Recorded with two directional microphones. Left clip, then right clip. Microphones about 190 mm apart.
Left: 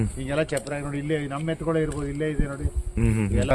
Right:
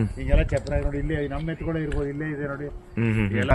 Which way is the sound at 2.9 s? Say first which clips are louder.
Right 1 dB; 5° left (ahead or behind).